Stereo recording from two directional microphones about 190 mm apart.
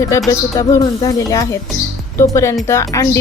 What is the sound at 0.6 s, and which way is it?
Speech, 20° left (ahead or behind).